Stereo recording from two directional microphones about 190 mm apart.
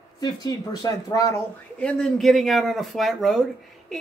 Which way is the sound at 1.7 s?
5° left (ahead or behind).